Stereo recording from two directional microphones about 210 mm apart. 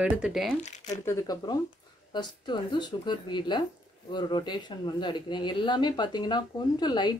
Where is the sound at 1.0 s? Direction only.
20° left (ahead or behind).